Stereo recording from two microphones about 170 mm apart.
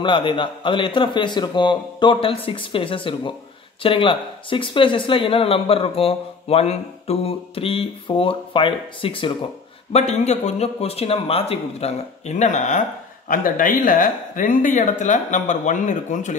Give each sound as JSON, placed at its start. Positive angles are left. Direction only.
{"t": 0.0, "sound": "a man's voice", "side_deg": 30}
{"t": 9.9, "sound": "speech", "side_deg": 40}